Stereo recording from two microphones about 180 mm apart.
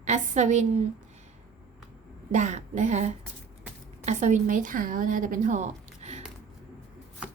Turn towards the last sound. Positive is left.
turn(degrees=-40)  # may be behind; listen again after turning